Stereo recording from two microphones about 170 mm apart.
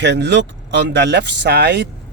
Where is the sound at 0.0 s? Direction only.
90° right.